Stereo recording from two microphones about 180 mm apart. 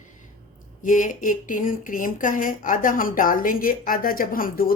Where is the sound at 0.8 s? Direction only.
45° left (ahead or behind).